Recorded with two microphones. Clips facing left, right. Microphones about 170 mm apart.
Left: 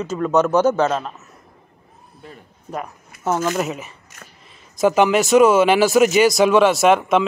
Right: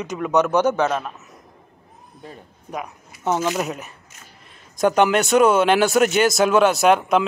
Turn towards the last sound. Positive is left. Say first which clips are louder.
# left 1 dB
turn(degrees=0)  # may be behind; listen again after turning